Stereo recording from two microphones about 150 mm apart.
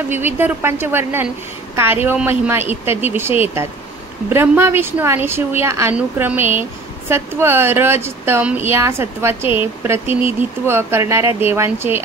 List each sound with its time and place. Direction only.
0.1 s a woman's voice: 15° right (ahead or behind)